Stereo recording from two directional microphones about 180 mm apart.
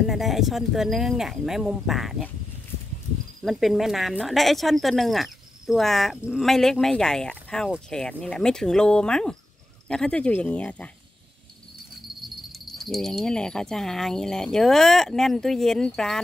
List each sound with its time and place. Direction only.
0.0 s speech: centre (ahead or behind)
3.4 s speech: centre (ahead or behind)
12.5 s speech: centre (ahead or behind)